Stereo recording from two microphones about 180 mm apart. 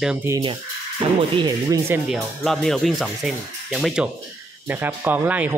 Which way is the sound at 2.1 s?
Centre (ahead or behind).